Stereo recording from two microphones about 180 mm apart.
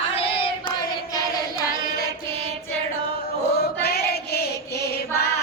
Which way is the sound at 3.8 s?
60° left (ahead or behind).